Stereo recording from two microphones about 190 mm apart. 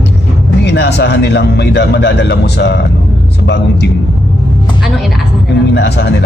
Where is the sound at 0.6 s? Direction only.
60° left (ahead or behind).